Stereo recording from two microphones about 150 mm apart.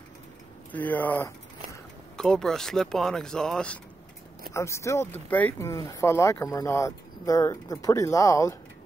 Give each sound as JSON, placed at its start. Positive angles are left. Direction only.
{"t": 0.7, "sound": "speech", "side_deg": 10}
{"t": 4.6, "sound": "speech", "side_deg": 20}